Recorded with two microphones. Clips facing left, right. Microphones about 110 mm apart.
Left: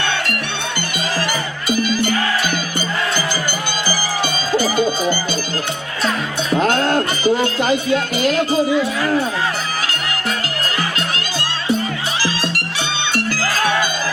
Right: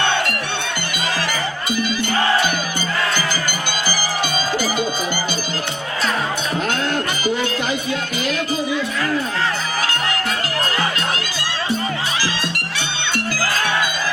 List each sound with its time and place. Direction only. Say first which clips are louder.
6.6 s music: left 7 dB; 35° left (ahead or behind)